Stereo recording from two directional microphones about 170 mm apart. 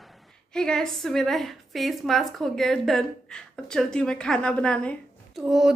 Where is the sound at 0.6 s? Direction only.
5° left (ahead or behind).